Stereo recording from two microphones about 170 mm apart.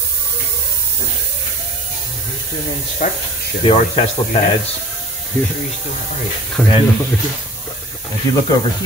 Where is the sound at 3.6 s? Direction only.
35° left (ahead or behind).